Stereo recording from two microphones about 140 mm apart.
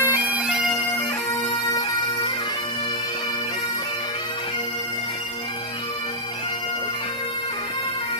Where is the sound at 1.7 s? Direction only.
30° left (ahead or behind).